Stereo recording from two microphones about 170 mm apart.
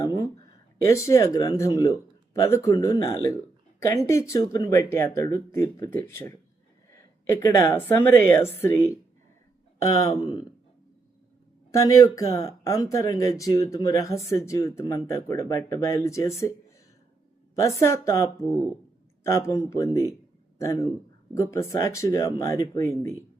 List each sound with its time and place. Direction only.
0.0 s a sound: 20° left (ahead or behind)
0.9 s a woman's voice: 15° left (ahead or behind)
10.0 s speech: 25° left (ahead or behind)
11.7 s speech: 20° left (ahead or behind)
17.5 s speech: 20° left (ahead or behind)